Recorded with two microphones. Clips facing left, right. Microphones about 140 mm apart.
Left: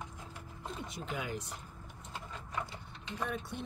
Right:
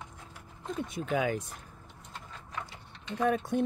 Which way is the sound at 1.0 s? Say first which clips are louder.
Right 11 dB; 65° right (ahead or behind).